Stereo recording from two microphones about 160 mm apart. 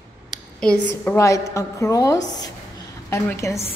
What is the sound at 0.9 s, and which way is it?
A woman's voice, 15° left (ahead or behind).